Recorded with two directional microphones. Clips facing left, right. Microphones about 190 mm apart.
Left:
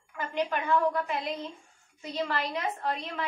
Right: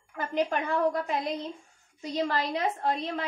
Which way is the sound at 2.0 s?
35° right (ahead or behind).